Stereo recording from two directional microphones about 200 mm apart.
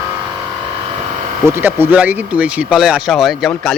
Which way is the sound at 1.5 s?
10° right (ahead or behind).